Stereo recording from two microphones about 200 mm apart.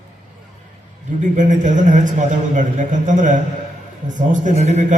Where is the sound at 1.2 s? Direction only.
40° right (ahead or behind).